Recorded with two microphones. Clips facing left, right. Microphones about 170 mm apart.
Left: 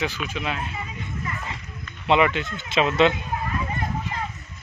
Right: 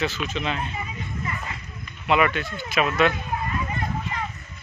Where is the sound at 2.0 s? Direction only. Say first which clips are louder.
Left 2 dB; 20° left (ahead or behind).